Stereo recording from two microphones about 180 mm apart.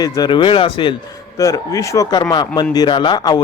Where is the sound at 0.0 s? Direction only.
20° left (ahead or behind).